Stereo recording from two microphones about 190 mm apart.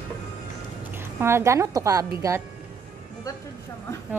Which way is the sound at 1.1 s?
15° right (ahead or behind).